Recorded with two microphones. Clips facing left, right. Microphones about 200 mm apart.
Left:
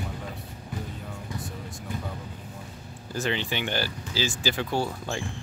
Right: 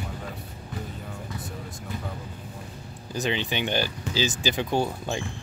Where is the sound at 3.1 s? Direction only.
20° right (ahead or behind).